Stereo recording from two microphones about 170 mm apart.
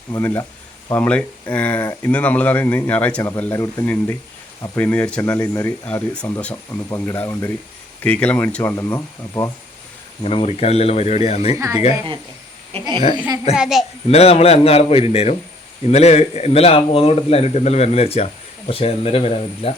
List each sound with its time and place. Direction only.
0.1 s speech: 15° left (ahead or behind)
10.2 s speech: 35° left (ahead or behind)
12.7 s speech: 35° right (ahead or behind)
13.1 s a child's voice: 25° right (ahead or behind)
13.6 s a child's voice: centre (ahead or behind)
14.1 s speech: 35° left (ahead or behind)